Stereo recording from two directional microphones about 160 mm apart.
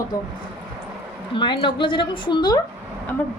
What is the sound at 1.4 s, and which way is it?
A woman's voice, 30° left (ahead or behind).